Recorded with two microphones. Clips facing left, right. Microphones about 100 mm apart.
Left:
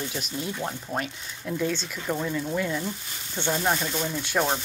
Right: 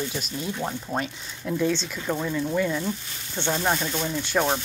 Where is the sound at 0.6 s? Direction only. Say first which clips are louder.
Right 2 dB; 5° right (ahead or behind).